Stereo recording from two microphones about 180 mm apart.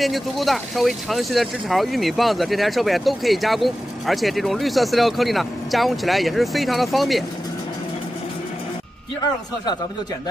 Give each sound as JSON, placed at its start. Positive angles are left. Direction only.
{"t": 0.0, "sound": "speech", "side_deg": 0}